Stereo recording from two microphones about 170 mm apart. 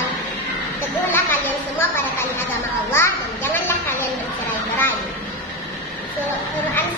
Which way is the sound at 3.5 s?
10° left (ahead or behind).